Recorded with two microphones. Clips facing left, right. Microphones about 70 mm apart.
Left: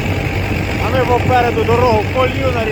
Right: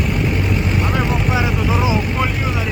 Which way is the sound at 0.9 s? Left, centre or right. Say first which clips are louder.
Left 11 dB; centre.